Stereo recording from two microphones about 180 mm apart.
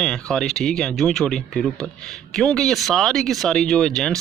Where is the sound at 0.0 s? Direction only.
5° left (ahead or behind).